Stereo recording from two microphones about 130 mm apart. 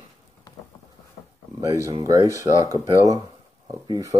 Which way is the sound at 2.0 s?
25° right (ahead or behind).